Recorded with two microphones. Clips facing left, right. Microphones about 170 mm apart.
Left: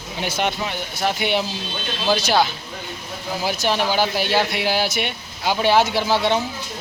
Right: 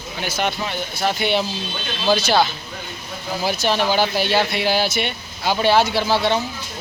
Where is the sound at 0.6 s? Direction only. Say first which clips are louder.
Right 1 dB; 10° left (ahead or behind).